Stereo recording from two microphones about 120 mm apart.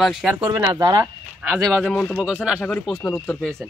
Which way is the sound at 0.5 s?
30° right (ahead or behind).